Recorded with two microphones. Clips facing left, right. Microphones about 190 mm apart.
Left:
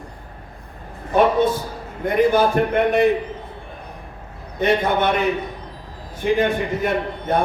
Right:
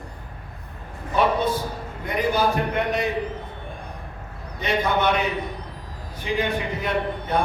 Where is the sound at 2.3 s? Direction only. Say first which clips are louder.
Left 5 dB; 55° left (ahead or behind).